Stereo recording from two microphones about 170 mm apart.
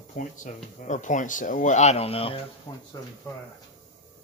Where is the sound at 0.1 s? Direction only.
45° left (ahead or behind).